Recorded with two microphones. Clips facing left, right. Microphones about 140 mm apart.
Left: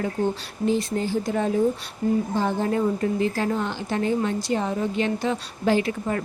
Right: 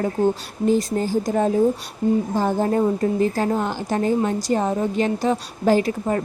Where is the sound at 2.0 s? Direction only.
25° right (ahead or behind).